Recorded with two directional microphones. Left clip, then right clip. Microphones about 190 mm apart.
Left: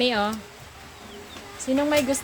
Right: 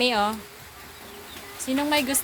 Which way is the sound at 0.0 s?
10° left (ahead or behind).